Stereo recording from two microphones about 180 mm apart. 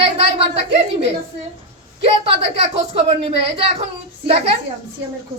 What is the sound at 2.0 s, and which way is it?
A woman's voice, 35° right (ahead or behind).